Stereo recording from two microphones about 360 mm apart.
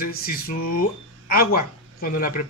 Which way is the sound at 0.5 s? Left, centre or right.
Left.